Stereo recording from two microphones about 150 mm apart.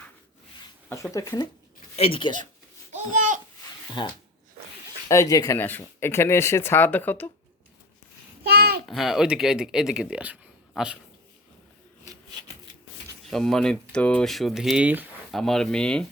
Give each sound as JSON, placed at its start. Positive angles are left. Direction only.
{"t": 1.1, "sound": "speech", "side_deg": 20}
{"t": 2.0, "sound": "speech", "side_deg": 35}
{"t": 2.9, "sound": "speech", "side_deg": -55}
{"t": 4.0, "sound": "speech", "side_deg": 30}
{"t": 5.0, "sound": "speech", "side_deg": 20}
{"t": 8.4, "sound": "a sound", "side_deg": -90}
{"t": 8.9, "sound": "speech", "side_deg": 0}
{"t": 13.3, "sound": "speech", "side_deg": 5}
{"t": 15.3, "sound": "speech", "side_deg": 5}